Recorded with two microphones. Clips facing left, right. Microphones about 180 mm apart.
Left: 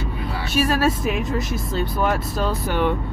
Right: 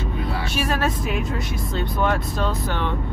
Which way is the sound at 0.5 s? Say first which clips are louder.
Left 6 dB; centre (ahead or behind).